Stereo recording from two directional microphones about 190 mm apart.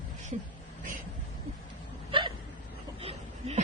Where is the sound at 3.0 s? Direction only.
30° right (ahead or behind).